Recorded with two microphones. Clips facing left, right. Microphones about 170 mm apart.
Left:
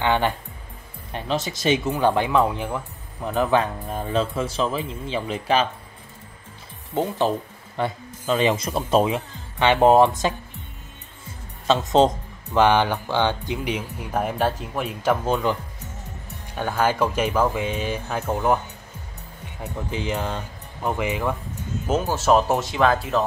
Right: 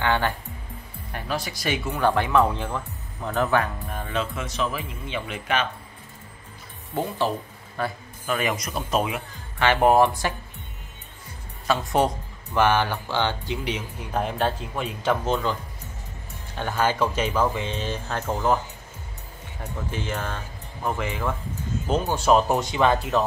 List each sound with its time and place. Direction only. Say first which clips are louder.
0.0 s speech: left 2 dB; 20° left (ahead or behind)
3.9 s speech: left 6 dB; 30° left (ahead or behind)
7.0 s speech: left 3 dB; 20° left (ahead or behind)
11.6 s speech: left 5 dB; 20° left (ahead or behind)
16.5 s speech: left 2 dB; 10° left (ahead or behind)
19.6 s speech: left 3 dB; 15° left (ahead or behind); by 23.2 s centre (ahead or behind)